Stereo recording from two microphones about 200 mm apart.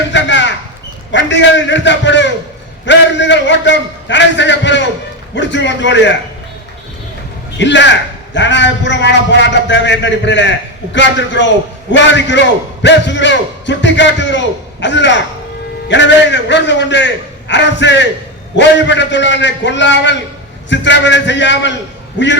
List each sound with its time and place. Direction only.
0.1 s a sound: 60° left (ahead or behind)
1.1 s a man's voice: 65° left (ahead or behind)
7.6 s a man's voice: 60° left (ahead or behind)